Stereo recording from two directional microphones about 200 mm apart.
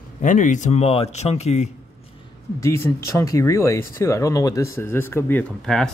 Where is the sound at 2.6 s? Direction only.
15° left (ahead or behind).